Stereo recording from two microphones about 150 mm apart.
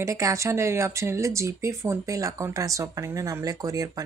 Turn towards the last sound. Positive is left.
turn(degrees=-25)  # may be behind; listen again after turning